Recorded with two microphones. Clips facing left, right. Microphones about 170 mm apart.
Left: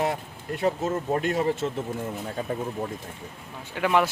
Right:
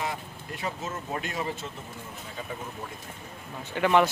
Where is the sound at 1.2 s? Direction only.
55° left (ahead or behind).